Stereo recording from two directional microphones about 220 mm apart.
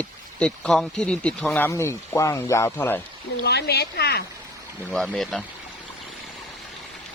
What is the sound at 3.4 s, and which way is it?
Speech, 50° left (ahead or behind).